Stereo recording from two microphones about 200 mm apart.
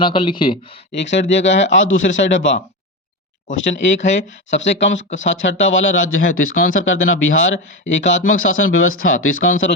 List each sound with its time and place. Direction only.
0.0 s speech: 25° left (ahead or behind)
0.9 s speech: 65° left (ahead or behind); by 6.7 s 90° left
6.7 s speech: 75° left (ahead or behind)